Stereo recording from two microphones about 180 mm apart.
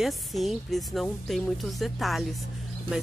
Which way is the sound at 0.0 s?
Centre (ahead or behind).